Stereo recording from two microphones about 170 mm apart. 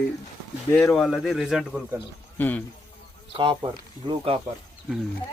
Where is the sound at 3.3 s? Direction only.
30° right (ahead or behind).